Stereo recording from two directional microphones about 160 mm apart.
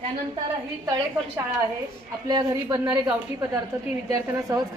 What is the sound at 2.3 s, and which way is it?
Speech, 25° right (ahead or behind).